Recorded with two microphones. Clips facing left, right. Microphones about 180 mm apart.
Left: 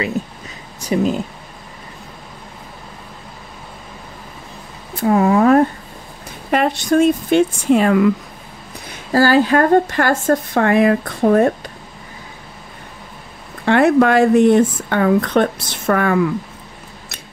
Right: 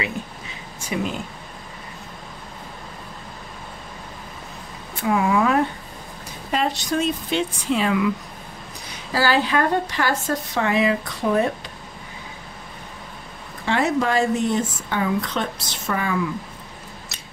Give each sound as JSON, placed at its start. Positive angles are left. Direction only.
{"t": 0.7, "sound": "speech", "side_deg": 40}
{"t": 5.0, "sound": "speech", "side_deg": 40}
{"t": 6.5, "sound": "a woman's voice", "side_deg": 55}
{"t": 13.7, "sound": "speech", "side_deg": 60}